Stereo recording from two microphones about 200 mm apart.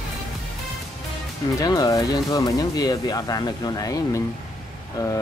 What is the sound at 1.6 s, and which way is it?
Speech, 20° left (ahead or behind).